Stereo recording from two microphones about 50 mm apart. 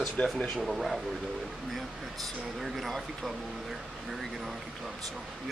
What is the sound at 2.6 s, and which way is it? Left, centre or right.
Speech, centre.